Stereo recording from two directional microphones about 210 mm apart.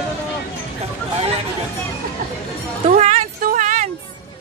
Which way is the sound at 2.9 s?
30° right (ahead or behind).